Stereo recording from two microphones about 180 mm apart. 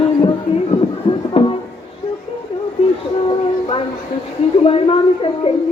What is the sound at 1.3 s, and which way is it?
Music, 30° left (ahead or behind).